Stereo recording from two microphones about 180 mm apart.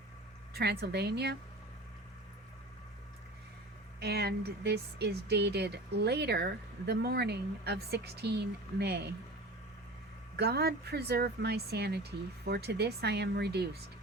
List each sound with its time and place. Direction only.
0.5 s speech: 65° right (ahead or behind)
4.0 s speech: 65° right (ahead or behind)
10.3 s speech: 65° right (ahead or behind)